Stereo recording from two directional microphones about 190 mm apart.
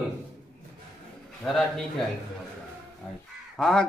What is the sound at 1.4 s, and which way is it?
Speech, centre (ahead or behind).